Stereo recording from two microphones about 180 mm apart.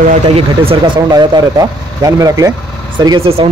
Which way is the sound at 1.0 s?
20° right (ahead or behind).